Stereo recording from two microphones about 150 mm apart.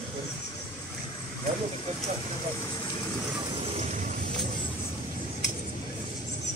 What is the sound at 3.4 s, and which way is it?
Vehicle, 40° right (ahead or behind).